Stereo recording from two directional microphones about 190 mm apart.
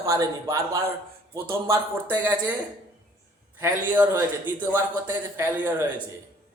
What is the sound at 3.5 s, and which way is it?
Speech, 10° right (ahead or behind).